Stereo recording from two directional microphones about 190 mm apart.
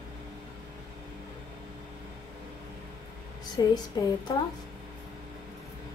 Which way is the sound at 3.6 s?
20° left (ahead or behind).